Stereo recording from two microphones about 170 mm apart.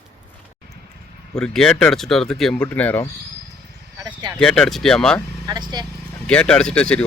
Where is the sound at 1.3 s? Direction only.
5° left (ahead or behind).